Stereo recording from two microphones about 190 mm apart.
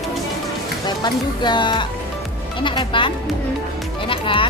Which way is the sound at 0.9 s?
25° left (ahead or behind).